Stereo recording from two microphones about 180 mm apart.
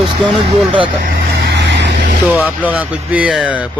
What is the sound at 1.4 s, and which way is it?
Vehicle, 70° right (ahead or behind).